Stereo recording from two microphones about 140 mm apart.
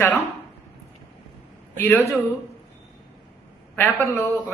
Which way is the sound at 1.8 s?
15° left (ahead or behind).